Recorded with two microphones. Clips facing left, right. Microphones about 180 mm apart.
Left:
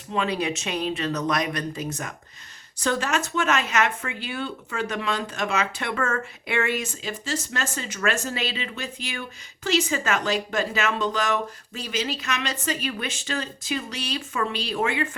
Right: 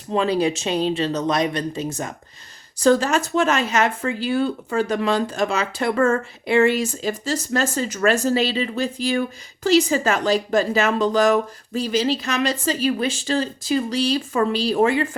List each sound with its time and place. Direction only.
0.1 s speech: 35° right (ahead or behind)